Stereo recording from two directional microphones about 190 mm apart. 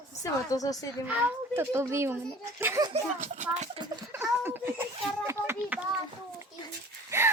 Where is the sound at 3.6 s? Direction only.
25° right (ahead or behind).